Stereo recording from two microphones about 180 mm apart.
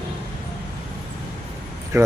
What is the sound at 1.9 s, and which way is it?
Speech, 15° right (ahead or behind).